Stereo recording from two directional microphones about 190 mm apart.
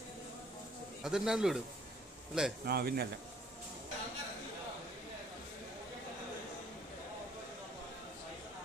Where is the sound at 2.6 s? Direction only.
55° right (ahead or behind).